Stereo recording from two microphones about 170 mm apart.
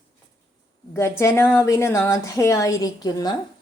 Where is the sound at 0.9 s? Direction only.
15° left (ahead or behind).